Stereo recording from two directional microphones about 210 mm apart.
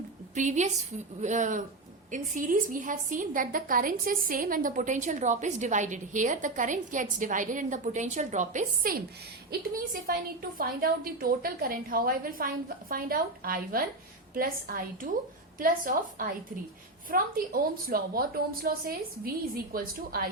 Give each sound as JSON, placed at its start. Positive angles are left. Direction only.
{"t": 0.3, "sound": "a woman's voice", "side_deg": -35}